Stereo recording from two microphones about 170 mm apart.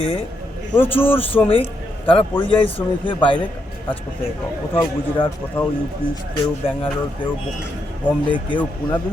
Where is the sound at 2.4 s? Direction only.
30° left (ahead or behind).